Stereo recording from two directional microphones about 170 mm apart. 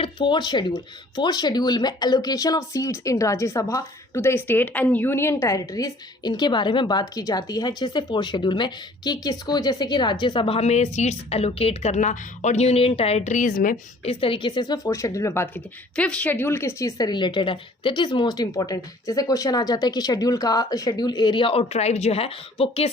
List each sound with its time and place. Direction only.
0.0 s speech: 25° left (ahead or behind); by 13.7 s 55° left (ahead or behind)
14.0 s speech: 35° left (ahead or behind)